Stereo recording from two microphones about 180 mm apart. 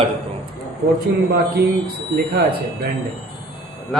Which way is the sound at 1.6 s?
60° right (ahead or behind).